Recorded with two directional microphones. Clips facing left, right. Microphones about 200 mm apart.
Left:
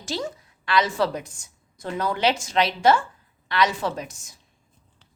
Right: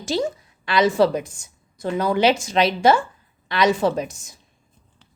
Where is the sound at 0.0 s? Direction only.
15° right (ahead or behind).